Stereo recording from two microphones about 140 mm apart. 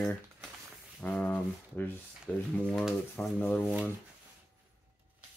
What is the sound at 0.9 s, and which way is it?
Speech, 10° left (ahead or behind).